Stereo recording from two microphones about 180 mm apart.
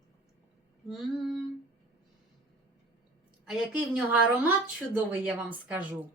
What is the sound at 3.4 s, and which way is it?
A woman's voice, 5° right (ahead or behind).